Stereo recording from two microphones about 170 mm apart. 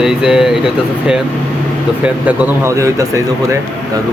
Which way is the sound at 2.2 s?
15° right (ahead or behind).